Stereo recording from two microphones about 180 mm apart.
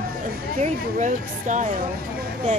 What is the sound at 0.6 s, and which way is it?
Speech, 45° right (ahead or behind).